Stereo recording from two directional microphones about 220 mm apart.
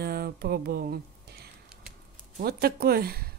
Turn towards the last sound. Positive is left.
turn(degrees=-45)  # may be behind; listen again after turning